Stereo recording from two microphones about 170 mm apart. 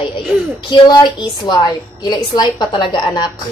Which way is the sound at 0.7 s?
25° left (ahead or behind).